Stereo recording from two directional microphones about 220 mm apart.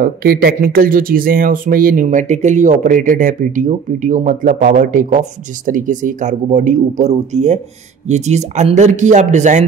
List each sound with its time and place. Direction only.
0.0 s speech: 45° right (ahead or behind)